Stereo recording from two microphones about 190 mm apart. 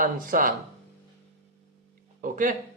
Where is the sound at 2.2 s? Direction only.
45° right (ahead or behind).